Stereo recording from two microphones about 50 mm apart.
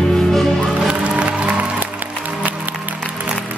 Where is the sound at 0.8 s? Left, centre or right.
Right.